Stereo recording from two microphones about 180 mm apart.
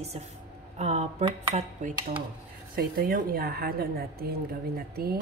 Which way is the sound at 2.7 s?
55° right (ahead or behind).